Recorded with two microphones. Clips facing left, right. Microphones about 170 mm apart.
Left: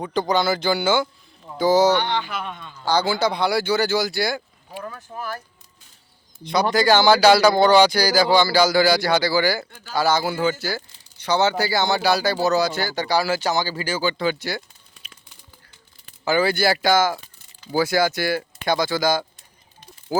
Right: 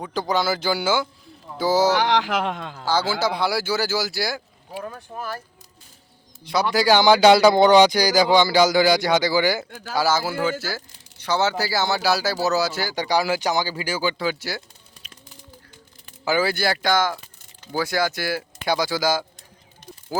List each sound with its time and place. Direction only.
0.0 s speech: 5° right (ahead or behind)
1.9 s speech: 90° right
2.8 s speech: 5° right (ahead or behind)
6.4 s speech: 5° right (ahead or behind)
9.9 s speech: 5° right (ahead or behind)
16.2 s speech: 5° right (ahead or behind)
20.1 s speech: centre (ahead or behind)